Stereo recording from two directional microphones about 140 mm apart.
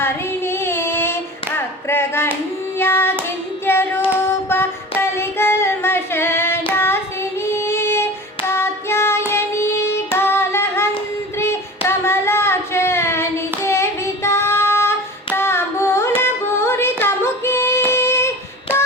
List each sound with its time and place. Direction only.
0.0 s female singing: 15° left (ahead or behind)
1.5 s clapping: 15° left (ahead or behind)
2.7 s hands: 15° left (ahead or behind)
3.2 s child singing: 15° left (ahead or behind)
9.3 s singing: 15° left (ahead or behind)
11.3 s a sound: 15° left (ahead or behind)
13.7 s child singing: 20° left (ahead or behind)
17.0 s female singing: 15° left (ahead or behind)